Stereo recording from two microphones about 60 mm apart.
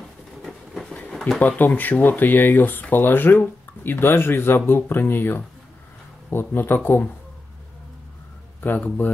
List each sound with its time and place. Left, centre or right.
0.5 s train: centre
0.9 s a sound: left
1.4 s speech: left
8.5 s speech: left